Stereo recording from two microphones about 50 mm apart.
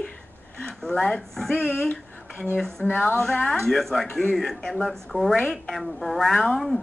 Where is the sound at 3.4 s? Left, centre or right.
Centre.